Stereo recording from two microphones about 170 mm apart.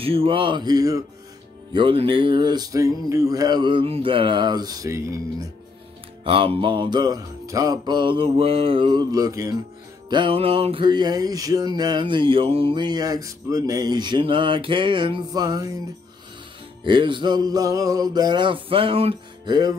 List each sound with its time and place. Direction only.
0.0 s music: 35° right (ahead or behind)
6.2 s music: 30° right (ahead or behind)
16.8 s music: 30° right (ahead or behind)